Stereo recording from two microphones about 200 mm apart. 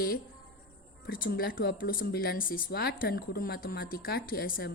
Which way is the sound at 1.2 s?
50° left (ahead or behind).